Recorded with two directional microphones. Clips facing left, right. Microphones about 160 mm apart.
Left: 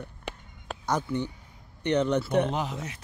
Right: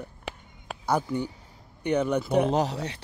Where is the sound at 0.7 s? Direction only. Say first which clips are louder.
Right 3 dB; 10° right (ahead or behind).